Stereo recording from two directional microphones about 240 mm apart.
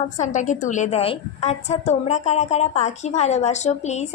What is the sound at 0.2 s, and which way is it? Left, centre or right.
A woman's voice, left.